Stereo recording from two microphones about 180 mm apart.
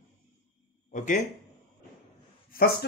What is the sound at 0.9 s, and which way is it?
Speech, 45° left (ahead or behind).